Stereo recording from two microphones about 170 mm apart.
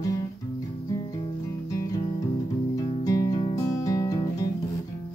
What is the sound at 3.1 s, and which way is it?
Guitar, 20° left (ahead or behind).